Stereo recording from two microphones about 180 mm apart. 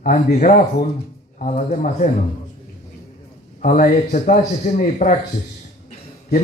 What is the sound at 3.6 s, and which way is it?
A man's voice, 50° left (ahead or behind).